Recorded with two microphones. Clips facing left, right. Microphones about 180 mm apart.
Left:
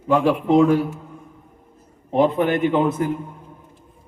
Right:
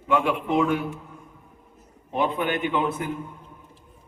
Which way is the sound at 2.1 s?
40° left (ahead or behind).